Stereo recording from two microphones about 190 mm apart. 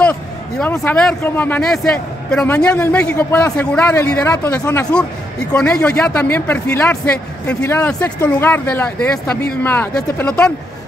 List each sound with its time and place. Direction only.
0.0 s a man's voice: 5° left (ahead or behind)